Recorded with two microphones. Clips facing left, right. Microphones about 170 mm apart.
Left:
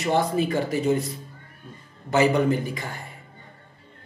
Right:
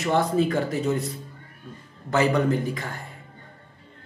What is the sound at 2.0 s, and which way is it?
Speech, 20° left (ahead or behind).